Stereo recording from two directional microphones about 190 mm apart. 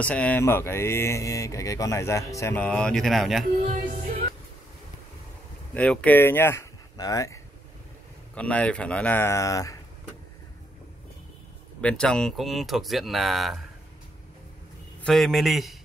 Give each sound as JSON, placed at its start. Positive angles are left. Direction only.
{"t": 0.0, "sound": "speech", "side_deg": 5}
{"t": 3.6, "sound": "music", "side_deg": -40}
{"t": 5.8, "sound": "speech", "side_deg": 5}
{"t": 8.4, "sound": "speech", "side_deg": 5}
{"t": 11.8, "sound": "speech", "side_deg": 5}
{"t": 15.0, "sound": "speech", "side_deg": 0}